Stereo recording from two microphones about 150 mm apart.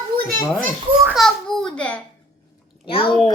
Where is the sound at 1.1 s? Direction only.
Centre (ahead or behind).